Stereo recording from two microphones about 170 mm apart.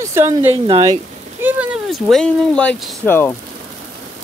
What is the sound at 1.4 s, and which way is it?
Speech, 10° right (ahead or behind).